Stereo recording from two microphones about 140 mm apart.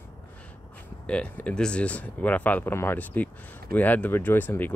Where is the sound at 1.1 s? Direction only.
10° left (ahead or behind).